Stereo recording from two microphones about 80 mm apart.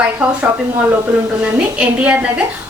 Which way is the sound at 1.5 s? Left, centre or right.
Centre.